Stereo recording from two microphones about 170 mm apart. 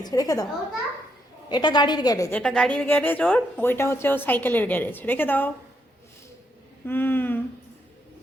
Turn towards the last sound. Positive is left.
turn(degrees=10)  # may be behind; listen again after turning